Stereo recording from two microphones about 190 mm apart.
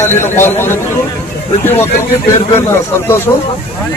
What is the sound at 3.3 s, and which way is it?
Speech, 15° left (ahead or behind).